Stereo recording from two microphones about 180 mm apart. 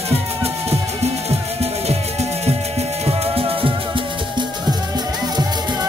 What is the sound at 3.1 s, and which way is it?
Music, 30° right (ahead or behind).